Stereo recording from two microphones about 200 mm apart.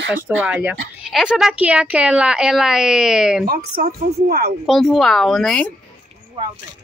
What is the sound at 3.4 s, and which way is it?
A woman's voice, 50° right (ahead or behind).